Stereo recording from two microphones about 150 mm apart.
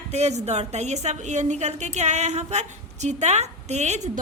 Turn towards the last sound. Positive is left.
turn(degrees=-50)  # may be behind; listen again after turning